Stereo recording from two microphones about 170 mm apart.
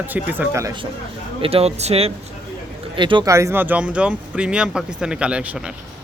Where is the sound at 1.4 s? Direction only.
35° right (ahead or behind).